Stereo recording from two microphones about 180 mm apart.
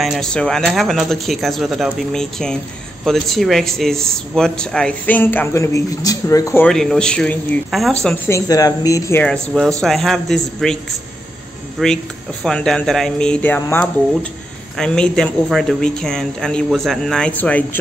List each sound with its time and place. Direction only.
0.0 s speech: centre (ahead or behind)
8.3 s speech: 20° left (ahead or behind)
9.2 s speech: 5° left (ahead or behind)
11.8 s speech: centre (ahead or behind)